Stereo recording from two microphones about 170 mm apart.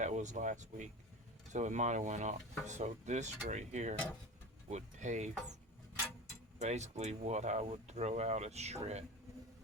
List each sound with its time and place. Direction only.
0.0 s speech: 45° right (ahead or behind)
6.6 s speech: 40° right (ahead or behind)